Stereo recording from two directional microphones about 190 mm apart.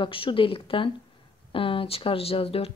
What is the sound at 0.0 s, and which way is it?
Speech, 25° left (ahead or behind).